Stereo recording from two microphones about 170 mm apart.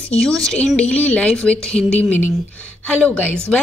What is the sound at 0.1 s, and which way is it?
A woman's voice, 5° left (ahead or behind).